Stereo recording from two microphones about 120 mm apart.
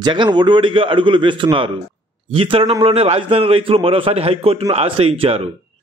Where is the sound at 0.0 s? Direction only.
40° right (ahead or behind).